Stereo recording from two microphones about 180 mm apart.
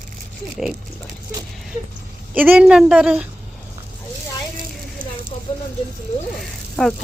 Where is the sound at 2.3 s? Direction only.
10° right (ahead or behind).